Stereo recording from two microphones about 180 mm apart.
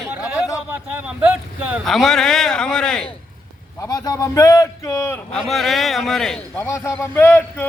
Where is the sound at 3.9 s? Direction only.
20° left (ahead or behind).